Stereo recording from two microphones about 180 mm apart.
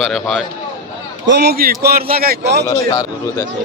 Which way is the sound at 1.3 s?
60° right (ahead or behind).